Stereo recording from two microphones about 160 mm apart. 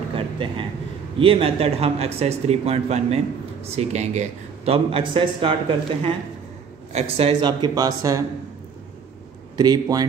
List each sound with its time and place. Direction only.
0.1 s a sound: 30° right (ahead or behind)
1.1 s speech: 35° right (ahead or behind)
9.6 s speech: 25° right (ahead or behind)